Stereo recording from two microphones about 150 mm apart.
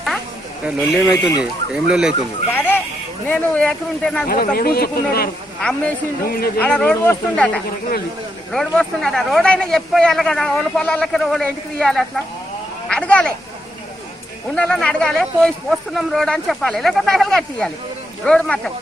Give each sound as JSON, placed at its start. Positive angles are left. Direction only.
{"t": 0.7, "sound": "speech", "side_deg": -5}
{"t": 2.5, "sound": "a sound", "side_deg": 15}
{"t": 3.3, "sound": "speech", "side_deg": 10}
{"t": 4.3, "sound": "speech", "side_deg": 75}
{"t": 6.6, "sound": "speech", "side_deg": 10}
{"t": 12.8, "sound": "a sound", "side_deg": 5}
{"t": 14.5, "sound": "speech", "side_deg": 5}